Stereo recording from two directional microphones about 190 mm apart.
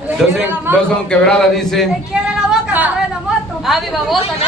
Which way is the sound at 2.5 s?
5° right (ahead or behind).